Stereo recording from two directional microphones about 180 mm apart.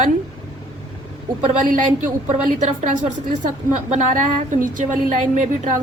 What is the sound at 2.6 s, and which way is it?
A woman's voice, 45° right (ahead or behind).